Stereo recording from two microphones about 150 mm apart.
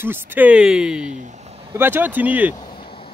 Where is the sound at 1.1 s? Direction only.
55° right (ahead or behind).